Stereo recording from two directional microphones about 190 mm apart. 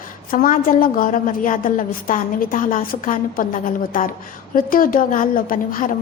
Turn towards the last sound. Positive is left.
turn(degrees=45)  # may be behind; listen again after turning